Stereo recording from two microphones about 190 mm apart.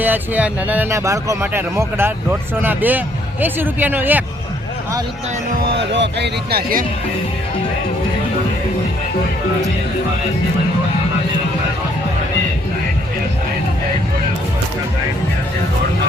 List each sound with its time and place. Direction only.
0.0 s speech: 10° right (ahead or behind)
5.9 s speech: 65° right (ahead or behind)